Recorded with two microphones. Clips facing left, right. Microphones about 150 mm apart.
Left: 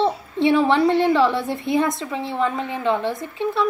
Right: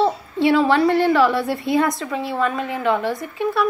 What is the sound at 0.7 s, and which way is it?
A woman's voice, 20° left (ahead or behind).